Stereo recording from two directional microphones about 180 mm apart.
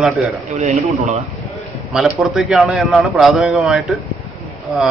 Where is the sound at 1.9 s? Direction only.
5° right (ahead or behind).